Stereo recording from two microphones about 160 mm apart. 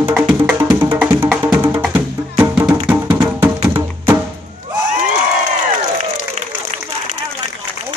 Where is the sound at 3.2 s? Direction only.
25° right (ahead or behind).